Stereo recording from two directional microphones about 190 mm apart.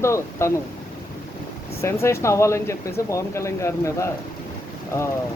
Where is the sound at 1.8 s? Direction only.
15° left (ahead or behind).